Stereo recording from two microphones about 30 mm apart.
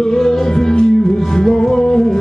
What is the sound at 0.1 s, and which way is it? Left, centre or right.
Music, centre.